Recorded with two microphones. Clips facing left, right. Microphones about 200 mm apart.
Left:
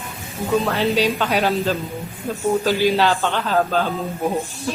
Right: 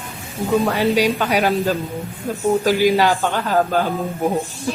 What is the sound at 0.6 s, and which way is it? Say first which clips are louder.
A man's voice: right 2 dB; 15° right (ahead or behind).